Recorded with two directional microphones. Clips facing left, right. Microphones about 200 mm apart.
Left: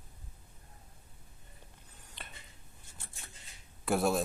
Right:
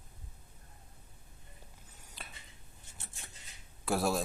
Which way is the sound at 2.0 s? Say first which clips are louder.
Even; 5° right (ahead or behind).